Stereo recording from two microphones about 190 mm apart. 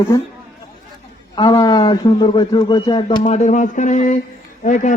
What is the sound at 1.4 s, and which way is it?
Speech, 25° left (ahead or behind).